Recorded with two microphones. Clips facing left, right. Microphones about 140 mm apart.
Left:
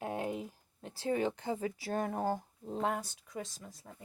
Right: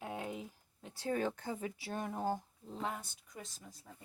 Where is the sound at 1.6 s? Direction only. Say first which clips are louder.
Left 6 dB; 40° left (ahead or behind); by 3.4 s 70° left (ahead or behind).